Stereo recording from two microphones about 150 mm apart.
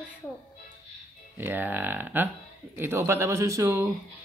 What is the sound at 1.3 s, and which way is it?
A man's voice, 15° right (ahead or behind).